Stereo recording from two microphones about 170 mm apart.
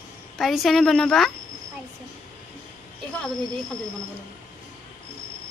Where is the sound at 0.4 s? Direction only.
Centre (ahead or behind).